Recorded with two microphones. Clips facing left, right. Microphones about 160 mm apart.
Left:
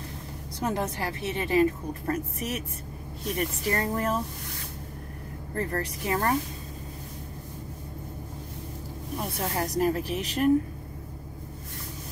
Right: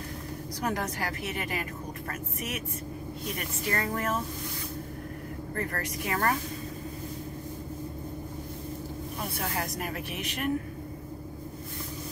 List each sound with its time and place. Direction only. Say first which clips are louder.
0.6 s a woman's voice: left 3 dB; 25° left (ahead or behind)
5.6 s a woman's voice: left 4 dB; 30° left (ahead or behind)
9.6 s speech: left 8 dB; 30° left (ahead or behind)